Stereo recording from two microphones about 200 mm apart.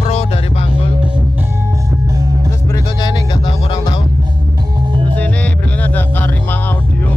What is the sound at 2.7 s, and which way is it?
Music, 20° left (ahead or behind).